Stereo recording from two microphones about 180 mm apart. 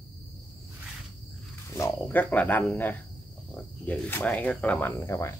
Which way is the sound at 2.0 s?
10° left (ahead or behind).